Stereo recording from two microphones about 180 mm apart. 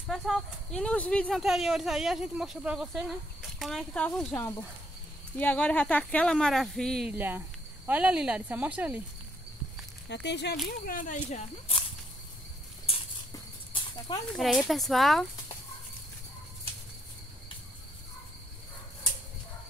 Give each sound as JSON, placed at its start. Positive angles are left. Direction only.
{"t": 0.1, "sound": "speech", "side_deg": 0}
{"t": 7.2, "sound": "speech", "side_deg": -10}
{"t": 10.0, "sound": "speech", "side_deg": 70}
{"t": 12.9, "sound": "a sound", "side_deg": 35}
{"t": 14.3, "sound": "speech", "side_deg": 0}